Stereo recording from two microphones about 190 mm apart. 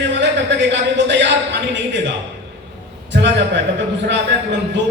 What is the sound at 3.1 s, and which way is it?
Speech, 65° right (ahead or behind).